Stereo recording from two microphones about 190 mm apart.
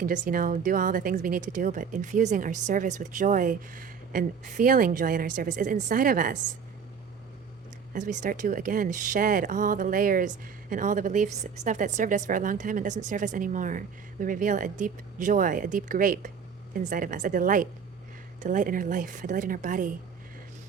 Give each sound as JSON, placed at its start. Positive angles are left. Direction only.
{"t": 0.0, "sound": "speech", "side_deg": -45}
{"t": 7.9, "sound": "speech", "side_deg": -40}